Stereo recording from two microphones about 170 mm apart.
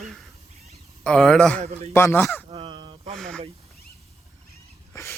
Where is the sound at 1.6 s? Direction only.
40° right (ahead or behind).